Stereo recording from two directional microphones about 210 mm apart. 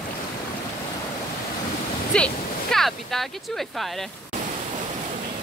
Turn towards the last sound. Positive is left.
turn(degrees=0)  # may be behind; listen again after turning